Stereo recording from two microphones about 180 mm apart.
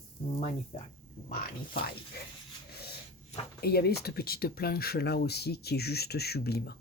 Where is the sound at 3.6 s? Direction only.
60° left (ahead or behind).